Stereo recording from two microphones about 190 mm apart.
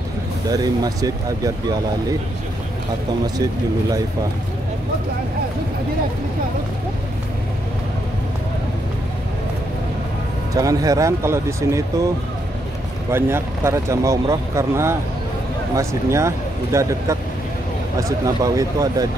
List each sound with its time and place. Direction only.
0.5 s speech: 20° right (ahead or behind)
10.5 s speech: 20° right (ahead or behind)
13.1 s speech: 15° right (ahead or behind)